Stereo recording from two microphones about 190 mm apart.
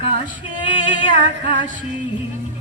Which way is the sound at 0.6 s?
25° left (ahead or behind).